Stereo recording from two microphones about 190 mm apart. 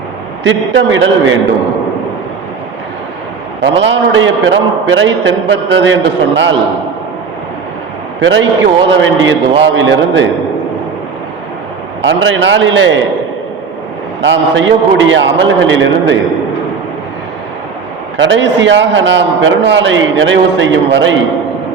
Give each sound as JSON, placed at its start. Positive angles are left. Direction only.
{"t": 0.4, "sound": "a man's voice", "side_deg": -75}
{"t": 3.6, "sound": "a man's voice", "side_deg": -70}
{"t": 8.2, "sound": "a man's voice", "side_deg": -75}
{"t": 12.0, "sound": "a man's voice", "side_deg": -80}
{"t": 14.2, "sound": "a man's voice", "side_deg": -80}
{"t": 18.2, "sound": "a man's voice", "side_deg": -75}